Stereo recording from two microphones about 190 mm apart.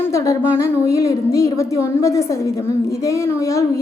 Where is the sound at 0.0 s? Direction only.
15° left (ahead or behind).